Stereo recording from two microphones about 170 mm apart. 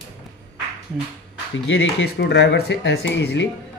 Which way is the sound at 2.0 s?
80° left.